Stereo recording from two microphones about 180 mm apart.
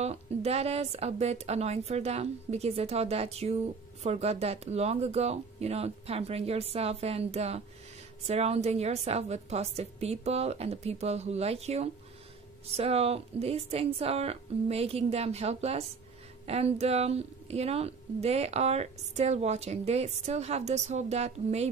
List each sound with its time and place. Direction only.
0.0 s a woman's voice: 35° right (ahead or behind)